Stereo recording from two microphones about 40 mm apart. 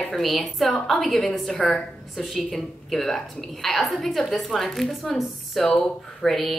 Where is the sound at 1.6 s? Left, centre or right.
Left.